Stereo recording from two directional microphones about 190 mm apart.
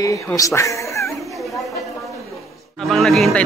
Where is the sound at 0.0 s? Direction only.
20° left (ahead or behind).